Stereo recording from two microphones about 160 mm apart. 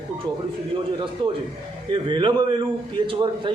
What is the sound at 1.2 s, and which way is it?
A man's voice, 30° right (ahead or behind).